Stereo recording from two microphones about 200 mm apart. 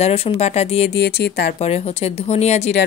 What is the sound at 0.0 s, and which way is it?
Speech, 30° left (ahead or behind).